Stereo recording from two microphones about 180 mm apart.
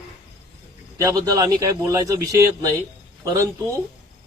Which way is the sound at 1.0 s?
20° right (ahead or behind).